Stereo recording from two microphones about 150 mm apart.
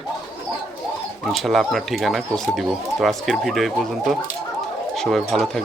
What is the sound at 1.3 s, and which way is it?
Speech, centre (ahead or behind).